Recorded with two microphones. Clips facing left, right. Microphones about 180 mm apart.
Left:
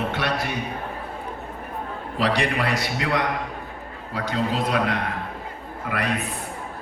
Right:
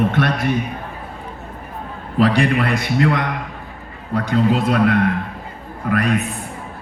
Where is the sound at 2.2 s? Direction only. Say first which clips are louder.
Right 7 dB; 55° right (ahead or behind).